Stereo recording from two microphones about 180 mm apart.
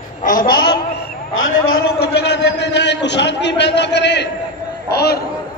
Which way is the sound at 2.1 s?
70° left (ahead or behind).